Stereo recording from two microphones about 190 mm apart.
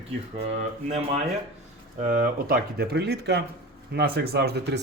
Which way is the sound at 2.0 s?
45° right (ahead or behind).